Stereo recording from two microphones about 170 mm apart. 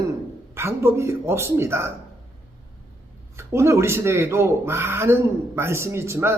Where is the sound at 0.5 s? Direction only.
15° right (ahead or behind).